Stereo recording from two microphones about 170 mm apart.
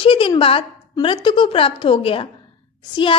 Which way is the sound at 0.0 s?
30° left (ahead or behind).